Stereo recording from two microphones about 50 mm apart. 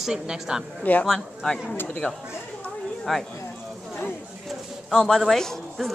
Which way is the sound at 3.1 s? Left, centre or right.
Centre.